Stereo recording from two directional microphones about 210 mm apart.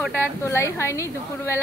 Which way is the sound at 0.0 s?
5° right (ahead or behind).